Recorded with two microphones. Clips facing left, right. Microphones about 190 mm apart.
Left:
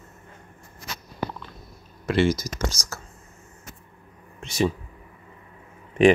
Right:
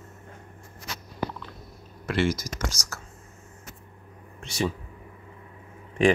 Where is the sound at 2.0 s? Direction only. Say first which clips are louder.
Left 4 dB; 25° left (ahead or behind).